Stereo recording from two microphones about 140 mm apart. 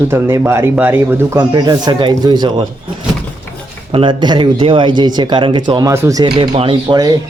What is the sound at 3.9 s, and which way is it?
Speech, 35° right (ahead or behind).